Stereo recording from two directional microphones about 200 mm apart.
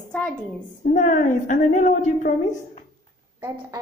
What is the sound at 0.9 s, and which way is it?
Speech, 40° left (ahead or behind).